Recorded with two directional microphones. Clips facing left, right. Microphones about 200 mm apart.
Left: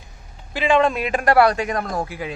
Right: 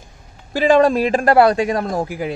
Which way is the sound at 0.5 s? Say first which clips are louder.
Right 5 dB; 40° right (ahead or behind).